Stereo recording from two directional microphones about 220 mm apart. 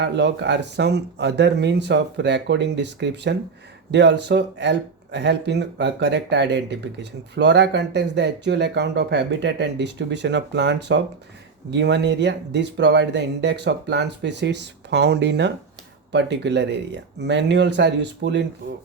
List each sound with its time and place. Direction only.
0.0 s speech: 50° right (ahead or behind)